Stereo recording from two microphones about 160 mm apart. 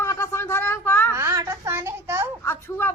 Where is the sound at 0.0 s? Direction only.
15° left (ahead or behind).